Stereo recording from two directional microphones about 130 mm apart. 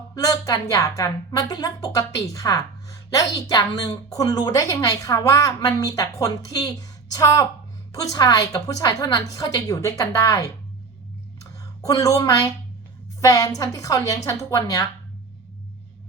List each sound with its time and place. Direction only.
0.1 s speech: 25° left (ahead or behind)
11.8 s speech: 25° left (ahead or behind)